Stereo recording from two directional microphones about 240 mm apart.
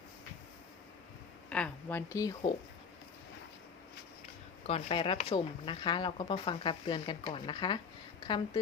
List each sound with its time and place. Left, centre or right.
1.5 s speech: centre
4.6 s speech: left